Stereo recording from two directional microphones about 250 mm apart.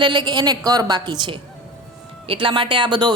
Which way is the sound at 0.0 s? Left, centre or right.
Centre.